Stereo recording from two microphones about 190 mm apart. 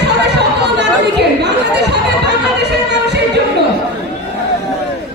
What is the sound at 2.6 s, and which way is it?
Music, 60° right (ahead or behind).